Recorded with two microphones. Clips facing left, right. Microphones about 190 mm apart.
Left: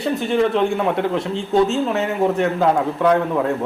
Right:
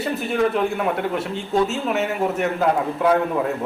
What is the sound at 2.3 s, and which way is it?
Speech, 5° right (ahead or behind).